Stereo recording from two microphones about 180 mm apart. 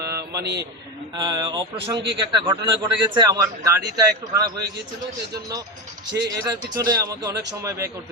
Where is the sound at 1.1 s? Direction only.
20° right (ahead or behind).